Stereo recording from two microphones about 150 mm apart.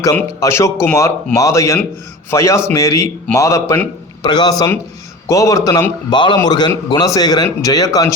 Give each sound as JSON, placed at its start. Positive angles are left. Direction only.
{"t": 0.0, "sound": "a man's voice", "side_deg": 20}